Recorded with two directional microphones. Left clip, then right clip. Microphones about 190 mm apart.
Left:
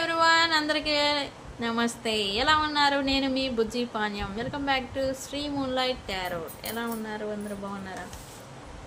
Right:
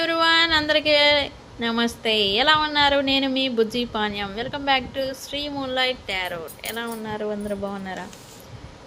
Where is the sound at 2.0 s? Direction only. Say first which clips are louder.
Right 7 dB; 35° right (ahead or behind).